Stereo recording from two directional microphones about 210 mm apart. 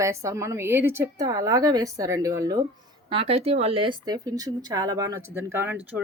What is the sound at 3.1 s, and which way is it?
Speech, 25° right (ahead or behind).